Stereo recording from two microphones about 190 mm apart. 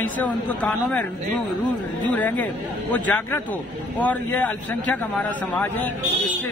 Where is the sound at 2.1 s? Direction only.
10° left (ahead or behind).